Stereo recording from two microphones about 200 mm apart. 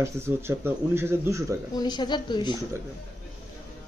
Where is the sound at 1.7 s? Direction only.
20° left (ahead or behind).